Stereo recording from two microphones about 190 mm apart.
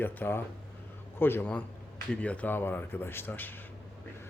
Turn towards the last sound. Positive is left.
turn(degrees=10)  # may be behind; listen again after turning